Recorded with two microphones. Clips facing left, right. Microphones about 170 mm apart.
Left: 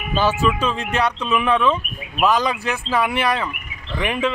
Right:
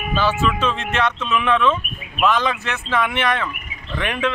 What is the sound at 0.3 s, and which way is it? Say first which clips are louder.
Speech: left 1 dB; 10° left (ahead or behind).